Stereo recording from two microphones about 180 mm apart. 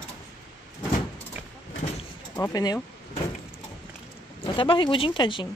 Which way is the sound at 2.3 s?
15° left (ahead or behind).